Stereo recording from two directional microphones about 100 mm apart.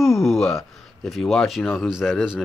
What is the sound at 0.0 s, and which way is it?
Speech, centre (ahead or behind).